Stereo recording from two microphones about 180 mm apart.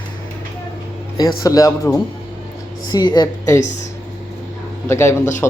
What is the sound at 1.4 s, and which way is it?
A woman's voice, 20° left (ahead or behind).